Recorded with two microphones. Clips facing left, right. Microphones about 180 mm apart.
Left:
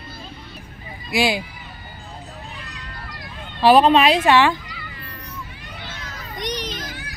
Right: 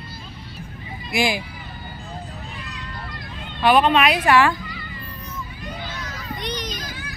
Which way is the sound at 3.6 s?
35° left (ahead or behind).